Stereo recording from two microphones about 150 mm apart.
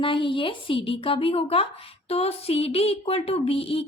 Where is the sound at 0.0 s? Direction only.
35° left (ahead or behind).